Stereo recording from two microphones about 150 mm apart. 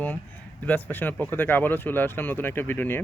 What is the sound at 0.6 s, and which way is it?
Speech, 10° left (ahead or behind).